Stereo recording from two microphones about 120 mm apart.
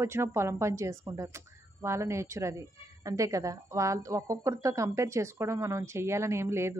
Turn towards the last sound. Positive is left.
turn(degrees=-20)  # may be behind; listen again after turning